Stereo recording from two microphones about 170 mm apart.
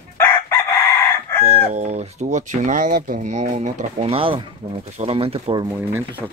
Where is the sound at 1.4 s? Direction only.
40° right (ahead or behind).